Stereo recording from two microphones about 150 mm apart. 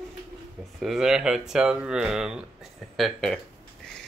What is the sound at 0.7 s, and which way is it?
Speech, 5° right (ahead or behind).